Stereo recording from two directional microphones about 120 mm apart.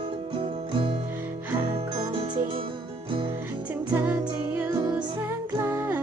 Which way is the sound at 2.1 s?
45° right (ahead or behind).